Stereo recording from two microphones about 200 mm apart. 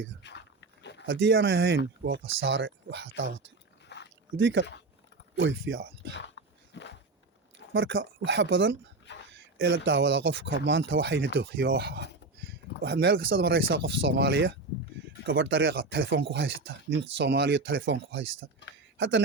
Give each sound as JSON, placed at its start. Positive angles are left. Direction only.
{"t": 0.2, "sound": "a sound", "side_deg": 60}
{"t": 1.0, "sound": "speech", "side_deg": -70}
{"t": 2.0, "sound": "speech", "side_deg": -70}
{"t": 3.8, "sound": "biting", "side_deg": 60}
{"t": 4.4, "sound": "speech", "side_deg": -70}
{"t": 6.1, "sound": "dog", "side_deg": 60}
{"t": 7.7, "sound": "speech", "side_deg": -75}
{"t": 11.3, "sound": "speech", "side_deg": -55}
{"t": 13.7, "sound": "speech", "side_deg": -65}